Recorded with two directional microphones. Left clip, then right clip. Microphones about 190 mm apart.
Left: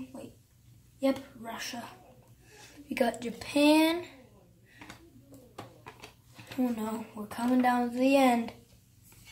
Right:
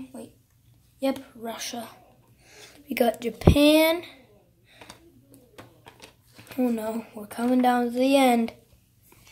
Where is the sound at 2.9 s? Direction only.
40° right (ahead or behind).